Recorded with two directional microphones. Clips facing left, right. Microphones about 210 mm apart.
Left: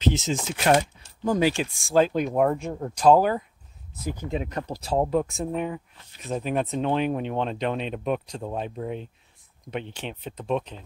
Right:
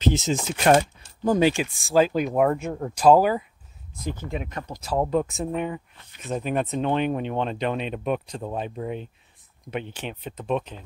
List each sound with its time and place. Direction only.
0.0 s speech: 40° right (ahead or behind)
1.5 s speech: 5° right (ahead or behind)
3.9 s speech: 10° left (ahead or behind)
4.3 s speech: 35° left (ahead or behind)
5.1 s speech: centre (ahead or behind)